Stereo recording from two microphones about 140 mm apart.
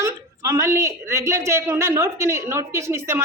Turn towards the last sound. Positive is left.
turn(degrees=-15)  # may be behind; listen again after turning